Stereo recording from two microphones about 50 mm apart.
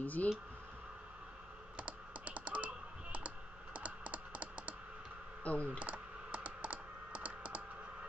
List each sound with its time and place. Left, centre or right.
0.0 s speech: left
1.8 s computer keyboard: right
5.4 s speech: left
5.7 s computer keyboard: right